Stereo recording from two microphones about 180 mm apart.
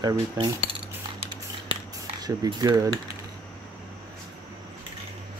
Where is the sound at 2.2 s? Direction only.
20° right (ahead or behind).